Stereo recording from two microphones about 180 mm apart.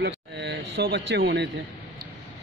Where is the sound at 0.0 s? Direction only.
70° right (ahead or behind).